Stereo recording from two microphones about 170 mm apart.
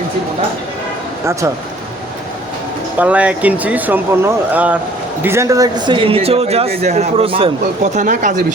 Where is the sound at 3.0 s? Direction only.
10° right (ahead or behind); by 7.5 s 35° right (ahead or behind).